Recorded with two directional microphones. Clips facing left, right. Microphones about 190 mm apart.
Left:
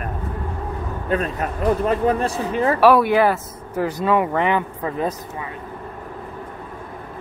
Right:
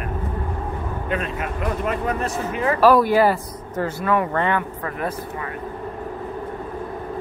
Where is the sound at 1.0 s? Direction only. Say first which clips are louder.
Left 4 dB; 40° left (ahead or behind).